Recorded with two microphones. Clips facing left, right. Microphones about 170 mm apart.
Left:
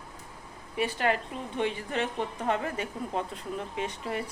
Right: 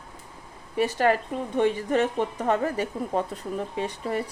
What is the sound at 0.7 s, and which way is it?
A woman's voice, 40° right (ahead or behind).